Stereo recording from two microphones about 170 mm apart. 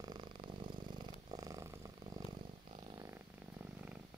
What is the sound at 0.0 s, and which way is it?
Purr, 25° right (ahead or behind).